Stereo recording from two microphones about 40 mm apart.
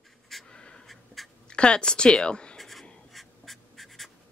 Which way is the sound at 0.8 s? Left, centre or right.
Centre.